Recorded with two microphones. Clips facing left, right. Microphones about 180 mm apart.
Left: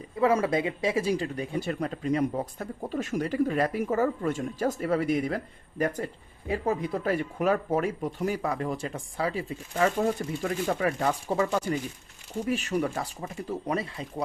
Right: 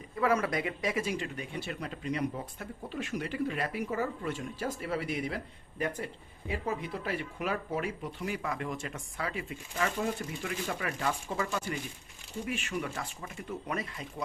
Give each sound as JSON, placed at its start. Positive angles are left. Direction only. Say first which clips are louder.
{"t": 0.2, "sound": "speech", "louder": "left 5 dB", "side_deg": 25}
{"t": 6.5, "sound": "speech", "louder": "left 7 dB", "side_deg": 40}
{"t": 12.5, "sound": "speech", "louder": "left 8 dB", "side_deg": 40}